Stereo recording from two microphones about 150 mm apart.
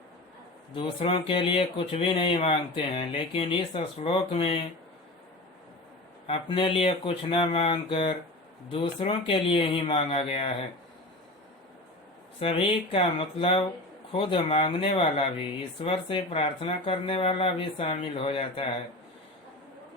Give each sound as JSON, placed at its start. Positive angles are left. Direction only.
{"t": 0.7, "sound": "speech", "side_deg": 35}
{"t": 6.2, "sound": "speech", "side_deg": 40}
{"t": 12.4, "sound": "speech", "side_deg": 35}